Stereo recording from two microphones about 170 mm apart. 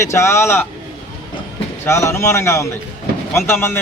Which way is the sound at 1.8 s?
15° left (ahead or behind).